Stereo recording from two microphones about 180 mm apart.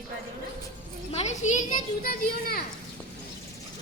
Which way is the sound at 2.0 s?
55° left (ahead or behind).